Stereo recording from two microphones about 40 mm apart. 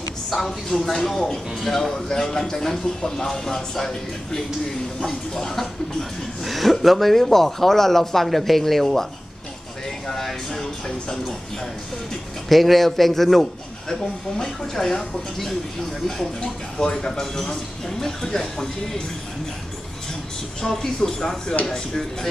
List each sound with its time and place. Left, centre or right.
0.5 s speech: centre
3.3 s speech: centre
10.0 s speech: centre
12.4 s a man's voice: centre
20.6 s speech: centre